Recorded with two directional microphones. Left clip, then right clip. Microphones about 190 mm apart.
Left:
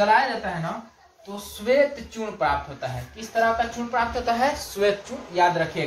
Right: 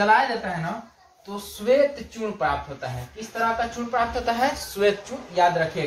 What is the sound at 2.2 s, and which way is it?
Speech, 5° right (ahead or behind).